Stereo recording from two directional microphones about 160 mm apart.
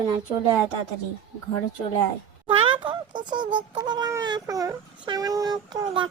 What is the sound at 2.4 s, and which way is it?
Speech, 30° right (ahead or behind).